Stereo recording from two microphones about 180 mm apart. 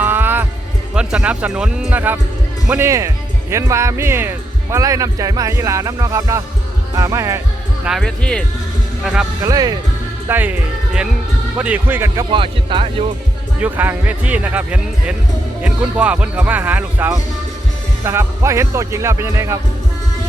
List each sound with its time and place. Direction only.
0.0 s music: 10° right (ahead or behind)
0.9 s speech: 5° right (ahead or behind)
7.9 s speech: centre (ahead or behind)
9.4 s speech: 20° right (ahead or behind)
12.3 s speech: 30° right (ahead or behind)
13.6 s speech: 10° right (ahead or behind)